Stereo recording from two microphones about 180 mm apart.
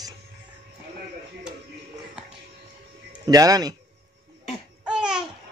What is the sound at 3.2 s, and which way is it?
Speech, 20° right (ahead or behind).